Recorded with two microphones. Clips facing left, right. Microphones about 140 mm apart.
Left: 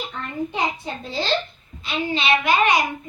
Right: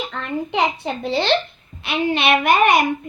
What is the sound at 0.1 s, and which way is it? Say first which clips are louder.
A child's voice: right 4 dB; 75° right (ahead or behind).